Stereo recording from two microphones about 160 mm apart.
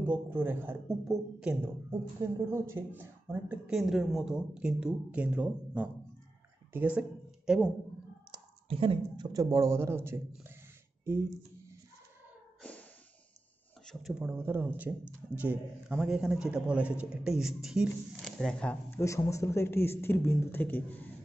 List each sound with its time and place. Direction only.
0.0 s a woman's voice: 10° right (ahead or behind)
2.2 s a woman's voice: 15° right (ahead or behind)
8.3 s speech: 35° right (ahead or behind); by 10.2 s 15° right (ahead or behind)
11.1 s a sound: 15° right (ahead or behind)
13.8 s speech: centre (ahead or behind)
14.2 s a woman's voice: 15° right (ahead or behind); by 21.1 s 10° left (ahead or behind)